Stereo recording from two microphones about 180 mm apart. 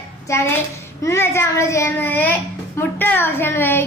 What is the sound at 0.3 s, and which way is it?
Speech, 15° left (ahead or behind).